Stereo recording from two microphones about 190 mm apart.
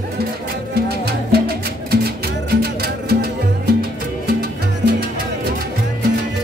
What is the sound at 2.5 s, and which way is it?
Music, 55° right (ahead or behind).